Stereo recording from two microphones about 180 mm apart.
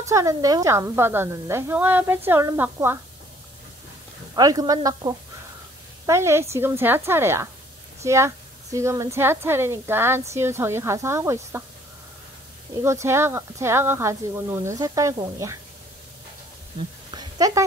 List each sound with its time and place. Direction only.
0.0 s a woman's voice: 15° right (ahead or behind)
4.4 s a woman's voice: 20° right (ahead or behind)
12.8 s a woman's voice: 15° right (ahead or behind)
17.1 s a sound: 20° right (ahead or behind)